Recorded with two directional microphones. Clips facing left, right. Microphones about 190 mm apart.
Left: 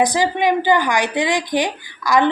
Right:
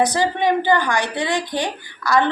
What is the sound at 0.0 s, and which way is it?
Speech, 15° left (ahead or behind).